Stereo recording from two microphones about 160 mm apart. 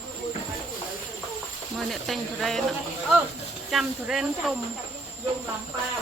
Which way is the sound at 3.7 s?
Centre (ahead or behind).